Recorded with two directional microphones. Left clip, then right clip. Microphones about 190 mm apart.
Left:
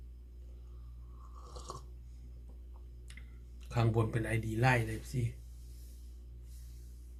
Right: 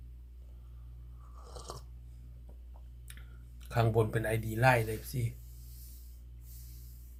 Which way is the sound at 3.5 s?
25° right (ahead or behind).